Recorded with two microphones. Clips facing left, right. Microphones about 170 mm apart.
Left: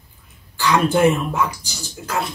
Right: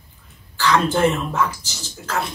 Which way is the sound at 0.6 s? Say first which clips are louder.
Left 1 dB; 10° left (ahead or behind).